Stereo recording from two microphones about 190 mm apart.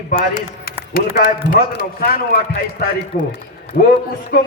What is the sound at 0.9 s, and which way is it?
Speech, 50° left (ahead or behind).